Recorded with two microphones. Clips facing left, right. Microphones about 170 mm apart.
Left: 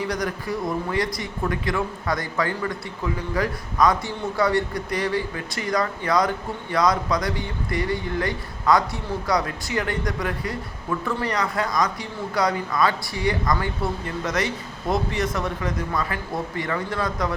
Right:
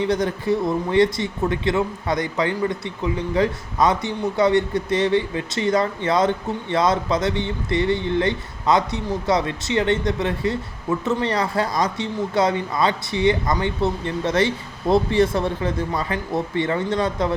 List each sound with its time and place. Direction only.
0.0 s speech: 25° right (ahead or behind)